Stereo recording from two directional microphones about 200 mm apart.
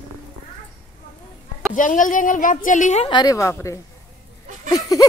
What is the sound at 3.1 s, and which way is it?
Speech, 20° left (ahead or behind).